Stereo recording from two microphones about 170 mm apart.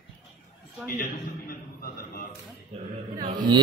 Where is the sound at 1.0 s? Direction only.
60° left (ahead or behind).